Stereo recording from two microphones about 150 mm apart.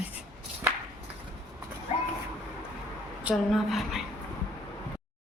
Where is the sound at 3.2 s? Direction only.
5° right (ahead or behind).